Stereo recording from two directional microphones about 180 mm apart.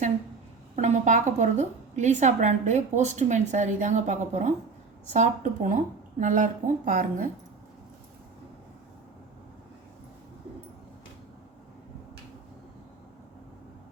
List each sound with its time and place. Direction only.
0.8 s a woman's voice: 40° right (ahead or behind)